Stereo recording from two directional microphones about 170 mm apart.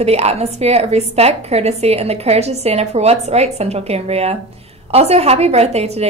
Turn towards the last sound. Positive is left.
turn(degrees=-40)  # may be behind; listen again after turning